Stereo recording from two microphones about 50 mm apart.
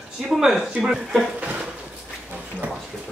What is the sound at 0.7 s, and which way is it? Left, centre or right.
Speech, centre.